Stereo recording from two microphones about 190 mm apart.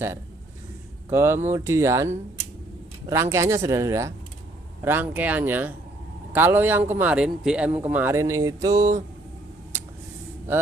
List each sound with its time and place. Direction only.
1.1 s a man's voice: 15° right (ahead or behind)